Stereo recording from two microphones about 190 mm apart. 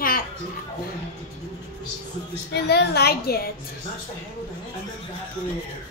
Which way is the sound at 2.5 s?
60° left (ahead or behind).